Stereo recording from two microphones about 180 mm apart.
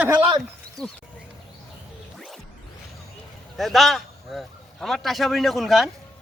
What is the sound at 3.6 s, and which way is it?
A man's voice, centre (ahead or behind).